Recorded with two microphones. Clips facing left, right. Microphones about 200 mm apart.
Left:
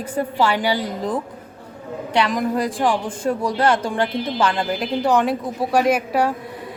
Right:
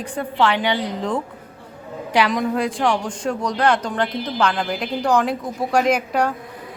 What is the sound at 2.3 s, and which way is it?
A woman's voice, centre (ahead or behind).